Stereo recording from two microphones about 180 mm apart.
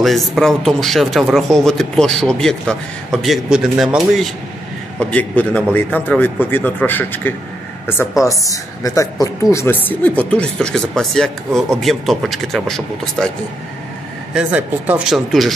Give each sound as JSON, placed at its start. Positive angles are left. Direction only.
{"t": 0.0, "sound": "speech", "side_deg": 0}
{"t": 5.1, "sound": "a man's voice", "side_deg": 10}
{"t": 14.3, "sound": "speech", "side_deg": -10}